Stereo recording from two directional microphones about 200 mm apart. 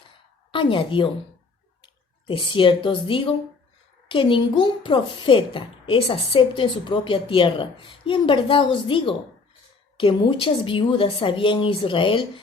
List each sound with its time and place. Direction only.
0.5 s speech: 25° left (ahead or behind)